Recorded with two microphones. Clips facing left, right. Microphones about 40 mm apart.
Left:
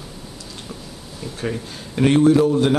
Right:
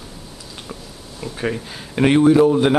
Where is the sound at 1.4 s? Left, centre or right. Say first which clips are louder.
Right 2 dB; right.